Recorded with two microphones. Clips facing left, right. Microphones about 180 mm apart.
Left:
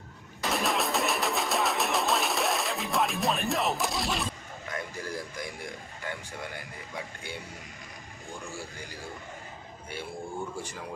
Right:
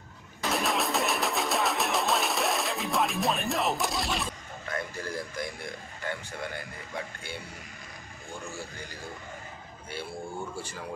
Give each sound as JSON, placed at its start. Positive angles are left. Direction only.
{"t": 0.4, "sound": "a sound", "side_deg": 0}
{"t": 4.6, "sound": "a man's voice", "side_deg": 10}
{"t": 10.5, "sound": "a man's voice", "side_deg": 15}